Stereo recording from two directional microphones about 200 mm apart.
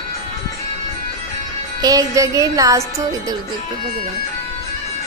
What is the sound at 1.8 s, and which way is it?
Speech, 15° right (ahead or behind).